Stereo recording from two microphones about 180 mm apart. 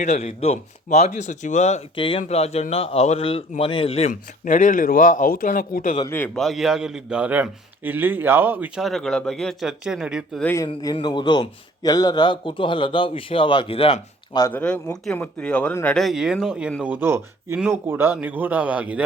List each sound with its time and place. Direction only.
0.0 s speech: 40° left (ahead or behind)
4.1 s a man's voice: 45° left (ahead or behind)
6.1 s a man's voice: 10° left (ahead or behind)
10.4 s speech: 15° left (ahead or behind)
10.7 s a man's voice: 25° left (ahead or behind)
14.4 s a man's voice: 10° left (ahead or behind); by 19.0 s 10° right (ahead or behind)